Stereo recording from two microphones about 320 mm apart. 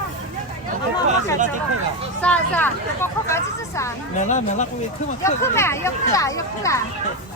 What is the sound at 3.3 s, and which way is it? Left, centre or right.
Vehicle, centre.